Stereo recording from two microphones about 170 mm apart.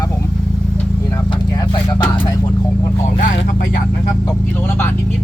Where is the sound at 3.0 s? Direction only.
50° left (ahead or behind).